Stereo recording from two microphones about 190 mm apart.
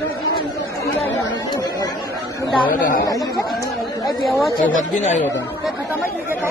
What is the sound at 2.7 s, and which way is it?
Speech, 45° left (ahead or behind).